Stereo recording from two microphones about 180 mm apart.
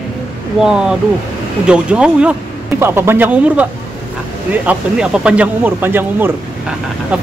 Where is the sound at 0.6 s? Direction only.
5° right (ahead or behind).